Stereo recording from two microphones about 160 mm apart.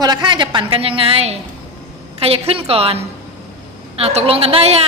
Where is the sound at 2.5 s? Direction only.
35° right (ahead or behind).